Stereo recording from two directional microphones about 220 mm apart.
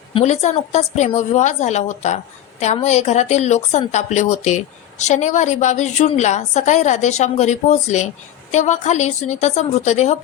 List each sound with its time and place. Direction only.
0.1 s a woman's voice: 30° left (ahead or behind)